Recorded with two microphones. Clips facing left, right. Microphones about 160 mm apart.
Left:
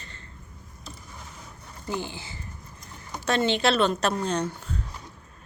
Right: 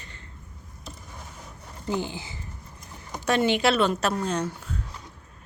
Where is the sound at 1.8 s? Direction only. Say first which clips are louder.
Right 3 dB; 15° right (ahead or behind).